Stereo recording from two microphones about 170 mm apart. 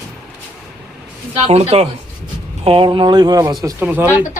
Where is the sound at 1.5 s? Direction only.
35° right (ahead or behind); by 4.0 s 10° right (ahead or behind).